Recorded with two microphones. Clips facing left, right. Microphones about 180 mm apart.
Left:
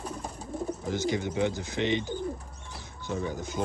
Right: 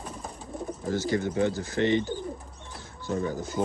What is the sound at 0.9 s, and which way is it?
Speech, 20° left (ahead or behind).